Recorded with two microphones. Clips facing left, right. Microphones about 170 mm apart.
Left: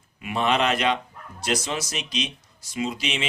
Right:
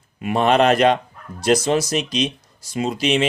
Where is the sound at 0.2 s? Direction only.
45° right (ahead or behind).